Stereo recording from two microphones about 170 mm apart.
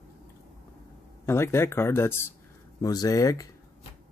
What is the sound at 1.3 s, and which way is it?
Speech, 15° left (ahead or behind).